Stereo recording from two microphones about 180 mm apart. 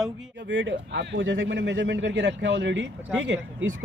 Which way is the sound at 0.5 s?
90° right.